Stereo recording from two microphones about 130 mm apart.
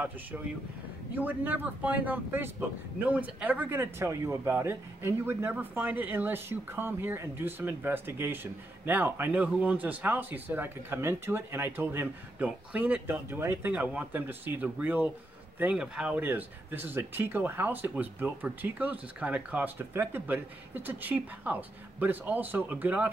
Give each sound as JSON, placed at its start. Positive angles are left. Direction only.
{"t": 1.1, "sound": "speech", "side_deg": -15}